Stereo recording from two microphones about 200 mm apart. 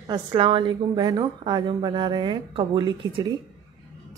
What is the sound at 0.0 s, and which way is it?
A woman's voice, 20° right (ahead or behind).